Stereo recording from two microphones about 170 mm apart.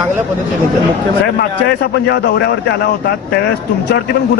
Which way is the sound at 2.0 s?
75° left (ahead or behind).